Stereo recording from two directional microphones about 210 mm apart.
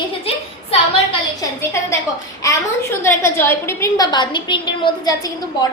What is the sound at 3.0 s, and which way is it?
A woman's voice, 10° left (ahead or behind).